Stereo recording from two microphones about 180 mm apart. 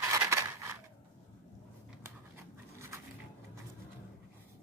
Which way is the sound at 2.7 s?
15° right (ahead or behind).